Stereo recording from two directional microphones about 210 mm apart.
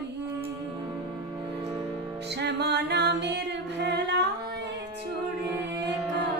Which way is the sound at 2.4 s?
55° right (ahead or behind).